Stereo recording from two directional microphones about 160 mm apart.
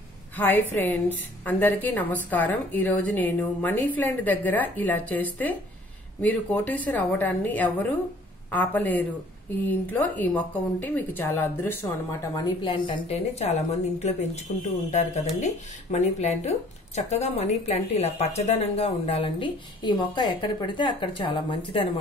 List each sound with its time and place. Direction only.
0.4 s a woman's voice: 10° left (ahead or behind); by 13.2 s 30° left (ahead or behind)
13.4 s a woman's voice: 45° left (ahead or behind)